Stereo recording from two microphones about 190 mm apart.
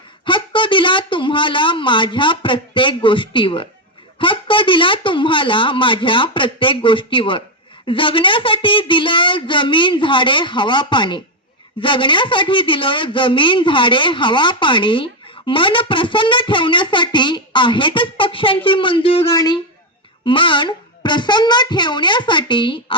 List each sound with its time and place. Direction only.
0.3 s speech: 25° left (ahead or behind)
19.3 s speech: 20° left (ahead or behind)